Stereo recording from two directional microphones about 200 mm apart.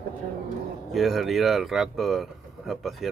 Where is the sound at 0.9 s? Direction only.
Centre (ahead or behind).